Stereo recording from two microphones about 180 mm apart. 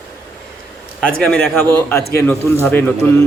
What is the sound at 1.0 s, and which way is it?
A man's voice, 5° left (ahead or behind).